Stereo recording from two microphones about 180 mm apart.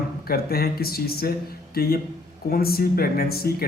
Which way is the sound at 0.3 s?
60° left (ahead or behind).